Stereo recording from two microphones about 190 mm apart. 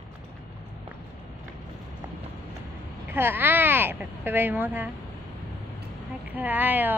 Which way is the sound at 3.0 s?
10° right (ahead or behind).